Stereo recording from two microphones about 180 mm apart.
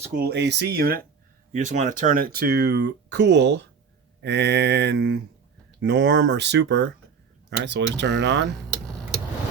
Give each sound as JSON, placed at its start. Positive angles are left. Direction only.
{"t": 0.0, "sound": "speech", "side_deg": -50}
{"t": 1.5, "sound": "speech", "side_deg": -45}